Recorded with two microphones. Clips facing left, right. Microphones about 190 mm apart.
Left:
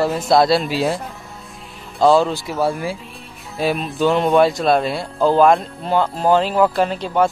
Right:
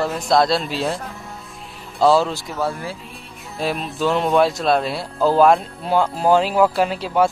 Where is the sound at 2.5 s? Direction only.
15° left (ahead or behind).